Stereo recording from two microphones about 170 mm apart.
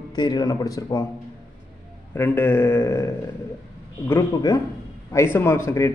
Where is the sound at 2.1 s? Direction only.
15° left (ahead or behind).